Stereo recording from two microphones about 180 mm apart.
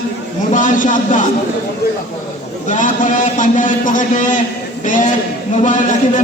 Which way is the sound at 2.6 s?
45° left (ahead or behind).